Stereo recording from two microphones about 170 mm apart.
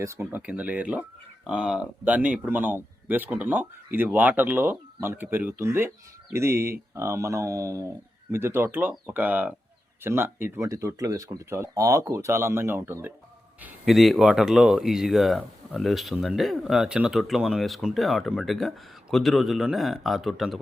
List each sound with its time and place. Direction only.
0.0 s speech: 15° right (ahead or behind); by 20.6 s centre (ahead or behind)